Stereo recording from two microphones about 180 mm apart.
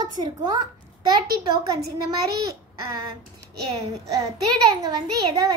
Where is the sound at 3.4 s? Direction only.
20° right (ahead or behind).